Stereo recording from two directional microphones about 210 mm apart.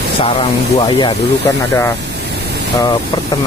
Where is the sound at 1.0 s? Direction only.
15° left (ahead or behind).